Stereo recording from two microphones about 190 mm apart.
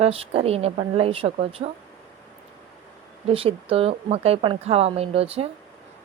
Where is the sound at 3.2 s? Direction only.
30° right (ahead or behind).